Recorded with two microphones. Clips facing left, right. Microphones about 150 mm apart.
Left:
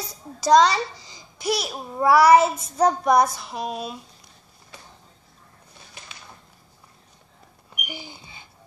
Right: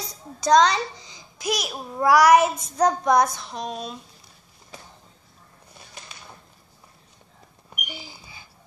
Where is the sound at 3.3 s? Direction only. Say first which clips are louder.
Left 2 dB; 5° left (ahead or behind).